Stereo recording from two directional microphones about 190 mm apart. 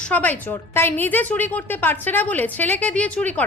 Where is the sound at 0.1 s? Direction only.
10° left (ahead or behind).